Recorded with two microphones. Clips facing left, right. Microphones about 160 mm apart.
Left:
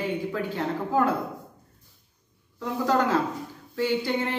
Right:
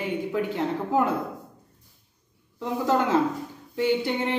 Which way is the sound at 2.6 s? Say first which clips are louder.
Even; 20° right (ahead or behind).